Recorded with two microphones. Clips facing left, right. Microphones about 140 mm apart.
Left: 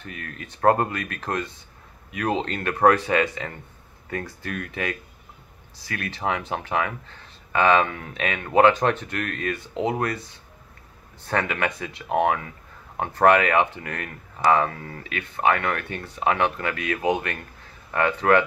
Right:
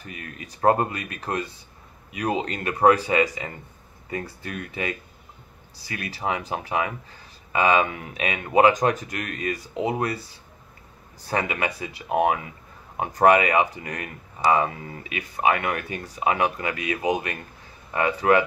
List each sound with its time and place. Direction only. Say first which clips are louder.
0.0 s speech: left 1 dB; 5° right (ahead or behind)